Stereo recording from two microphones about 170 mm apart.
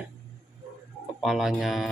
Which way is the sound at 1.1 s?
Centre (ahead or behind).